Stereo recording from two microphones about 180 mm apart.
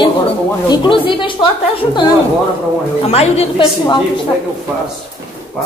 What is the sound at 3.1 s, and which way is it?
Speech, 35° left (ahead or behind).